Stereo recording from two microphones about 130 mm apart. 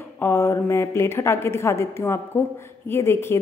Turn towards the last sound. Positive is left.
turn(degrees=20)  # may be behind; listen again after turning